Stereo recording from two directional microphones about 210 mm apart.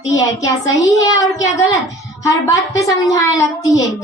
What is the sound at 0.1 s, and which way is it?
Speech, 15° left (ahead or behind).